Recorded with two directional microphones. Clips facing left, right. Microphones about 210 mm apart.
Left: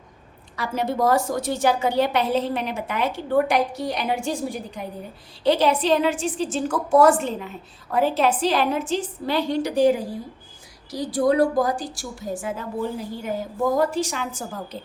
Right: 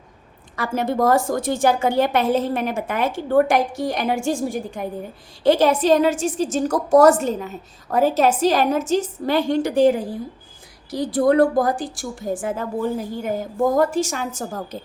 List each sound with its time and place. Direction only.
0.5 s a woman's voice: 50° right (ahead or behind)
10.9 s a woman's voice: 55° right (ahead or behind)